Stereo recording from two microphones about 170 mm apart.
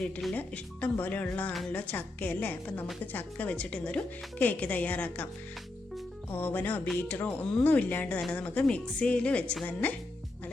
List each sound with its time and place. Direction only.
0.0 s speech: 5° left (ahead or behind)
6.3 s speech: 10° left (ahead or behind)